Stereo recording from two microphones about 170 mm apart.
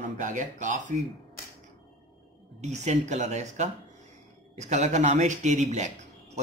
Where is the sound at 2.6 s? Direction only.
40° right (ahead or behind).